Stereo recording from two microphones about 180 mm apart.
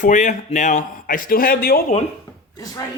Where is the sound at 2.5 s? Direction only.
20° left (ahead or behind).